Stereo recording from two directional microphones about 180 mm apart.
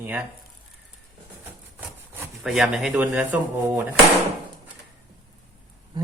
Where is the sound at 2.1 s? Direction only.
10° right (ahead or behind).